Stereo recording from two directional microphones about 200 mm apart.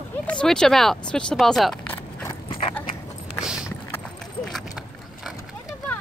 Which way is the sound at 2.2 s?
20° left (ahead or behind).